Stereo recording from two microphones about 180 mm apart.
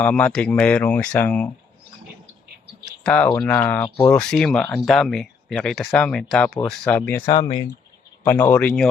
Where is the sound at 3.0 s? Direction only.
10° left (ahead or behind).